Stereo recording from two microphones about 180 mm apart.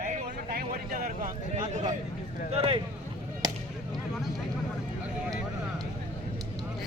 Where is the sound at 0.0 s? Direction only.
50° right (ahead or behind).